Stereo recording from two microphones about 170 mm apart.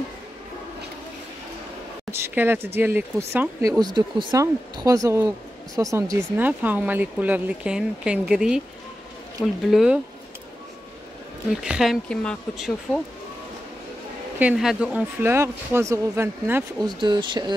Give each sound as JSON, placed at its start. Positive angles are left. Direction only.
{"t": 2.1, "sound": "speech", "side_deg": -15}
{"t": 11.5, "sound": "speech", "side_deg": -5}
{"t": 14.4, "sound": "speech", "side_deg": -5}
{"t": 16.8, "sound": "speech", "side_deg": -25}